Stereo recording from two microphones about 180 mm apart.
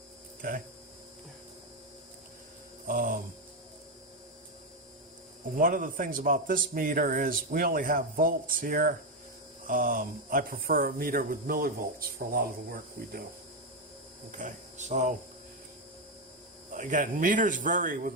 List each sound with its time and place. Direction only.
0.4 s speech: 50° right (ahead or behind)
2.8 s speech: 50° right (ahead or behind)
5.5 s speech: 50° right (ahead or behind)
14.3 s speech: 45° right (ahead or behind)
16.7 s speech: 45° right (ahead or behind)